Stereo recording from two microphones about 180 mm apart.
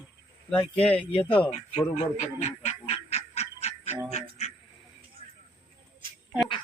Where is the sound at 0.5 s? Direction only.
10° left (ahead or behind).